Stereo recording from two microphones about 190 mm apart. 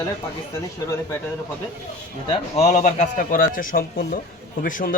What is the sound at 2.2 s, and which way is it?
A man's voice, 35° left (ahead or behind).